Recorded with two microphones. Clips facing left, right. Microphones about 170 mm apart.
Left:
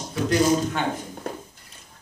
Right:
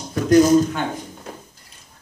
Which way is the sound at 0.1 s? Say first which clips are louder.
Right 8 dB; 40° right (ahead or behind).